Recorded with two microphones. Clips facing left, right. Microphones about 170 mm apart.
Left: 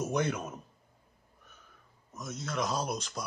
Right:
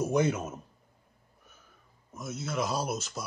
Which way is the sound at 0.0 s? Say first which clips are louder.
Right 4 dB; 5° right (ahead or behind).